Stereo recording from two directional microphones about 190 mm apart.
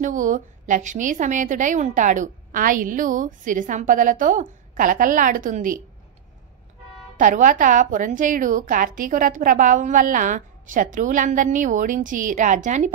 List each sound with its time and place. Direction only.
0.0 s a woman's voice: 40° right (ahead or behind)
7.2 s a woman's voice: 45° right (ahead or behind)